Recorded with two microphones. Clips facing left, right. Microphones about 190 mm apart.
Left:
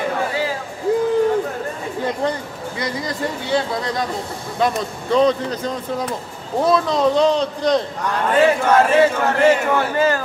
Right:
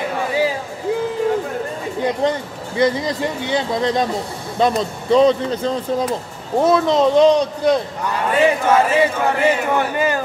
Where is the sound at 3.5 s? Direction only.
20° right (ahead or behind).